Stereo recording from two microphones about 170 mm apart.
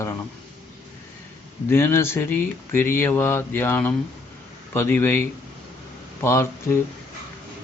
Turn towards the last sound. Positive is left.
turn(degrees=15)  # may be behind; listen again after turning